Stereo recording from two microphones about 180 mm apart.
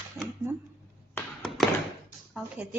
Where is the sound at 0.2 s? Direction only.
15° right (ahead or behind).